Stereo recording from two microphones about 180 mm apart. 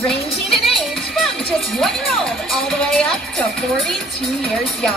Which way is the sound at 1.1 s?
Centre (ahead or behind).